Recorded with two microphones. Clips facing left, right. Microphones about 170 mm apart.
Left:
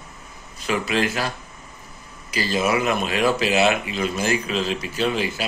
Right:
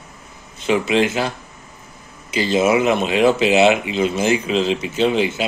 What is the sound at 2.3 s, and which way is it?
Speech, 25° right (ahead or behind).